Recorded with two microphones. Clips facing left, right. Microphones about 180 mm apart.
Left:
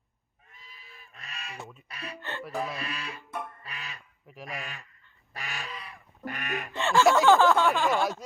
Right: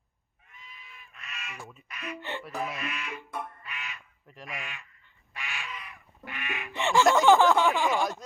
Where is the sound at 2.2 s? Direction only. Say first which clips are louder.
Even; 15° right (ahead or behind).